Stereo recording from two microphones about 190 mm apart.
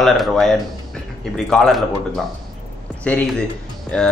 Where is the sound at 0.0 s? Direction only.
Centre (ahead or behind).